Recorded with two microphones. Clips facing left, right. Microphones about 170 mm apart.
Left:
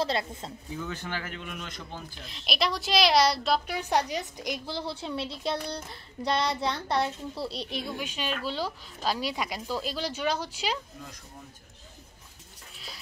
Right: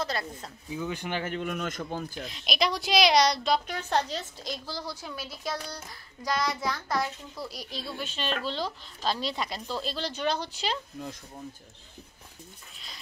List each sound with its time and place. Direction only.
0.0 s a child's voice: 25° left (ahead or behind)
0.7 s speech: 15° right (ahead or behind)
1.4 s speech: 45° right (ahead or behind)
2.2 s a woman's voice: centre (ahead or behind); by 7.6 s 30° left (ahead or behind)
7.7 s a woman's voice: 15° left (ahead or behind)
12.7 s a sound: 5° left (ahead or behind)